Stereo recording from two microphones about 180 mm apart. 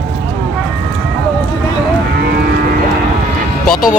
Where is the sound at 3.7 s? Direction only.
50° left (ahead or behind).